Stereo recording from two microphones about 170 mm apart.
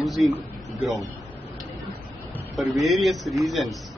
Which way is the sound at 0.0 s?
Centre (ahead or behind).